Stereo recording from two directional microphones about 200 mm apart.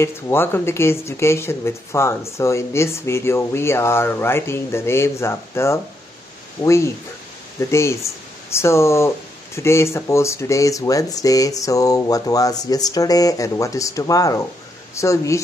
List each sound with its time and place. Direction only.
0.0 s speech: 10° left (ahead or behind)